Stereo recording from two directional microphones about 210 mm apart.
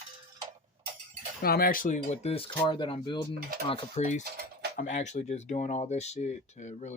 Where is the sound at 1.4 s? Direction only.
45° left (ahead or behind).